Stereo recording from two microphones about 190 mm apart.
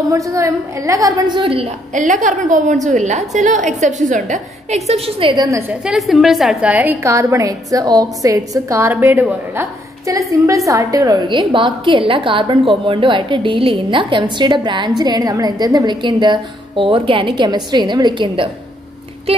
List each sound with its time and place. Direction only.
0.1 s a woman's voice: 15° right (ahead or behind)
5.7 s a woman's voice: centre (ahead or behind); by 18.5 s 25° right (ahead or behind)